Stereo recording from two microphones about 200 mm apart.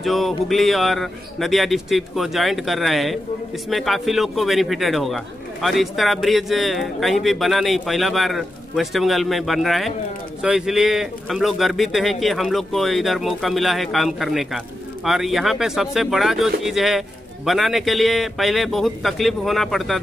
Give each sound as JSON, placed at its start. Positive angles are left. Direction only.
{"t": 0.0, "sound": "speech", "side_deg": 0}